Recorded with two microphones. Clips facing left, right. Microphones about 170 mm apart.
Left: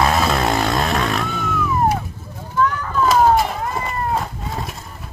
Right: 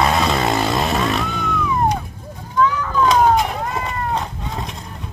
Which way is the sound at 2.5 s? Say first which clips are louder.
Right 2 dB; 5° left (ahead or behind).